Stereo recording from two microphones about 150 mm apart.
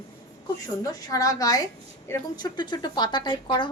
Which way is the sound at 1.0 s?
25° left (ahead or behind).